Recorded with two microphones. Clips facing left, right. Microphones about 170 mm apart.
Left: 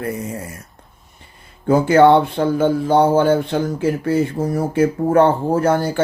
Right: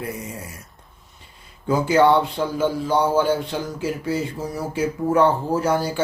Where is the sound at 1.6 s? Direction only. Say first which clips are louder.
Left 5 dB; 55° left (ahead or behind).